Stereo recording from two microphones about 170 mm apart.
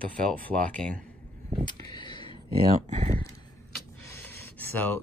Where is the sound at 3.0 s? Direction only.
55° right (ahead or behind).